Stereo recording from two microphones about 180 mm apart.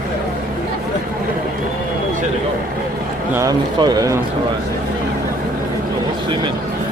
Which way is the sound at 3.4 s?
20° right (ahead or behind).